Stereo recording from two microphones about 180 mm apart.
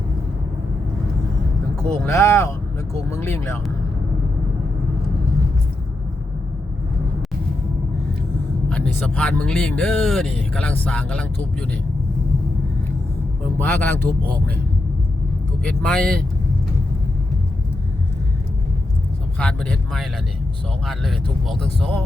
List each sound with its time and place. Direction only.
2.1 s speech: 15° left (ahead or behind)
8.7 s speech: 5° left (ahead or behind)
13.6 s speech: 10° left (ahead or behind)
15.6 s speech: 5° left (ahead or behind)
19.4 s speech: 5° left (ahead or behind)